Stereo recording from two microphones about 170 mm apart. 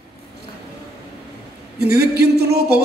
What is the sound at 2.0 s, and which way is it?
Speech, 70° right (ahead or behind).